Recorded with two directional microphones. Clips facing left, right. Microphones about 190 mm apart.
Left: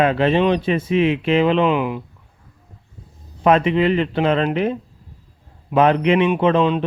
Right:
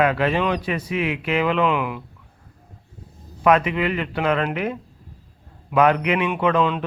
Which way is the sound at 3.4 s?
30° left (ahead or behind).